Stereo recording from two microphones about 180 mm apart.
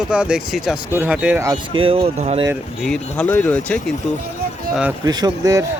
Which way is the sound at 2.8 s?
5° left (ahead or behind).